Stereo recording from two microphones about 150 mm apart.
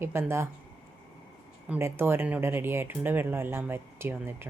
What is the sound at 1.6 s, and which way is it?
Speech, 10° right (ahead or behind).